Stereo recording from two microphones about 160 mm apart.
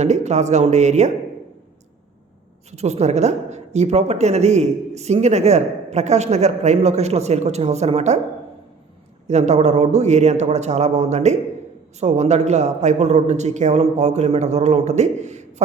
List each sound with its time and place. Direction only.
0.0 s speech: 45° right (ahead or behind)
2.7 s speech: 45° right (ahead or behind)
9.2 s speech: 45° right (ahead or behind)